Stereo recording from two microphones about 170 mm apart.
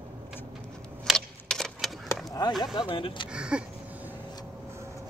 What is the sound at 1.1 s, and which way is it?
Typewriter, 5° left (ahead or behind).